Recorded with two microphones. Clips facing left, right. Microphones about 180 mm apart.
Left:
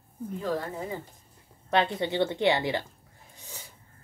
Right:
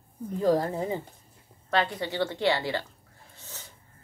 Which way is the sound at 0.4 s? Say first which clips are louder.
Right 8 dB; 35° right (ahead or behind).